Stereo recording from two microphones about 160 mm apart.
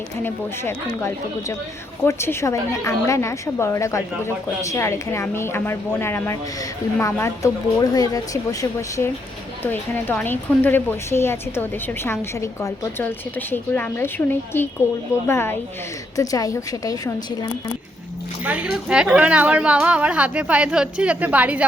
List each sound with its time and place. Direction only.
0.2 s a woman's voice: 15° left (ahead or behind)
9.6 s a woman's voice: 10° left (ahead or behind)
18.4 s a woman's voice: 10° right (ahead or behind)